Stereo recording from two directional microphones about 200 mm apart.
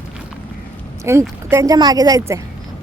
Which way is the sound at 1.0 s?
15° right (ahead or behind).